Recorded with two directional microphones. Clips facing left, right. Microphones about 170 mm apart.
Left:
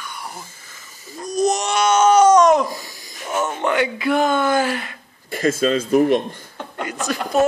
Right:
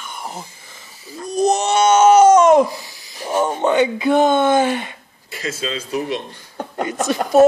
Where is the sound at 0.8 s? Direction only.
45° left (ahead or behind).